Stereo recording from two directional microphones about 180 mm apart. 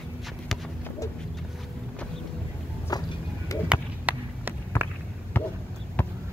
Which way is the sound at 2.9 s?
20° left (ahead or behind).